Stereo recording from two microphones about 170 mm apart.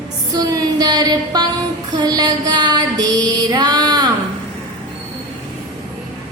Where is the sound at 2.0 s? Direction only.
25° right (ahead or behind).